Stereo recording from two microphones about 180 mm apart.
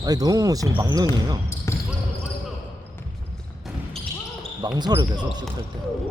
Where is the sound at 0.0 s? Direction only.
20° right (ahead or behind).